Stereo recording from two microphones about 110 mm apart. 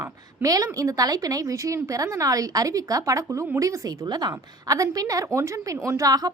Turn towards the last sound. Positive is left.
turn(degrees=-35)  # may be behind; listen again after turning